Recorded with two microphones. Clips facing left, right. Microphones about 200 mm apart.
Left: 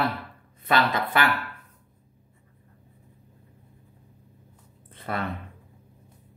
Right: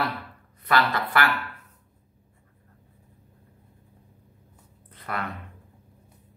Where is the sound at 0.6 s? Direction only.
20° left (ahead or behind).